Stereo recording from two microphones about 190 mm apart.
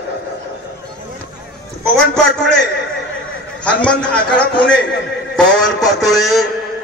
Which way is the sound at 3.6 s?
5° left (ahead or behind).